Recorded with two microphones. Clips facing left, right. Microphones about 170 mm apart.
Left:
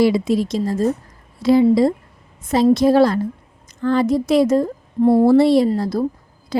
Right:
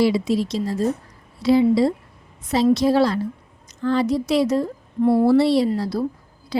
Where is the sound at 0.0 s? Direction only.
50° left (ahead or behind).